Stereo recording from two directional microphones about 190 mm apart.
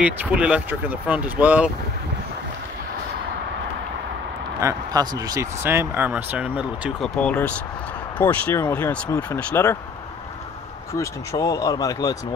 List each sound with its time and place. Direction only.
0.0 s speech: 5° right (ahead or behind)
4.6 s speech: 20° right (ahead or behind)
7.2 s speech: 5° left (ahead or behind)
10.9 s speech: 15° left (ahead or behind)